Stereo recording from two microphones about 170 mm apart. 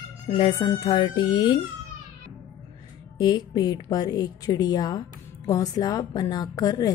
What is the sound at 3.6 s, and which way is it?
Speech, 25° left (ahead or behind).